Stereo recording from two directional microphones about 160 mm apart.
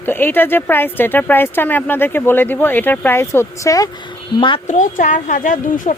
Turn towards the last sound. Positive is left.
turn(degrees=55)  # may be behind; listen again after turning